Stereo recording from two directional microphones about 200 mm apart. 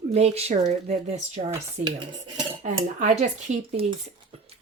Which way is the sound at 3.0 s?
35° right (ahead or behind).